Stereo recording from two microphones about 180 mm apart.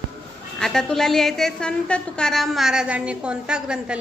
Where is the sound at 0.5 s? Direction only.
Centre (ahead or behind).